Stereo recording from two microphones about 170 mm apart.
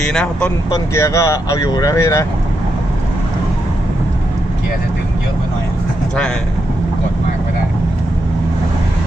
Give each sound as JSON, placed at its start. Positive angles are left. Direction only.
{"t": 0.0, "sound": "speech", "side_deg": 5}
{"t": 0.7, "sound": "speech", "side_deg": 20}